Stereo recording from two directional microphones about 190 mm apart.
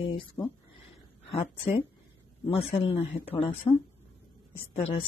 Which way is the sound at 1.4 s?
30° left (ahead or behind).